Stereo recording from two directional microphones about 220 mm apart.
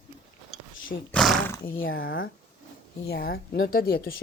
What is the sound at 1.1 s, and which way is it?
Speech, centre (ahead or behind).